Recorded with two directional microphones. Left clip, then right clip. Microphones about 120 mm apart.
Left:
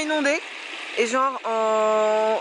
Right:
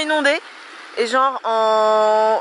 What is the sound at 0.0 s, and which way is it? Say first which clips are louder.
Speech: right 5 dB; 60° right (ahead or behind).